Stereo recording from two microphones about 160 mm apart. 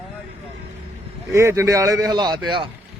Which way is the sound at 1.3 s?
20° right (ahead or behind).